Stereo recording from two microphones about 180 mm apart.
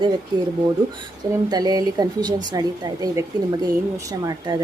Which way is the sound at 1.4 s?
20° right (ahead or behind).